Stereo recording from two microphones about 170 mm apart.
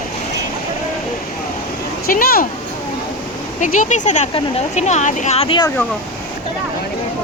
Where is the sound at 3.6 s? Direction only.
45° left (ahead or behind); by 5.7 s 30° left (ahead or behind).